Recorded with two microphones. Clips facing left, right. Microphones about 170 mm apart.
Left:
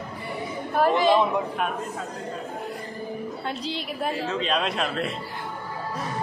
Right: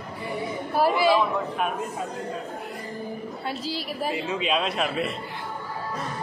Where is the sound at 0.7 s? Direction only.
10° right (ahead or behind).